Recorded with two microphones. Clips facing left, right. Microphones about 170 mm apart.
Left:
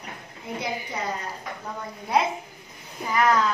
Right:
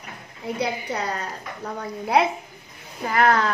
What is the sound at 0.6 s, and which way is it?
A woman's voice, 70° right (ahead or behind).